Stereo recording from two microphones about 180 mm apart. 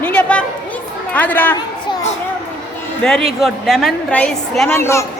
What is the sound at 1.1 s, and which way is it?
Speech, 10° left (ahead or behind).